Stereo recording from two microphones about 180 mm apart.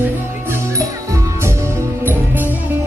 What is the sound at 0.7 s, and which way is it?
Music, 15° right (ahead or behind).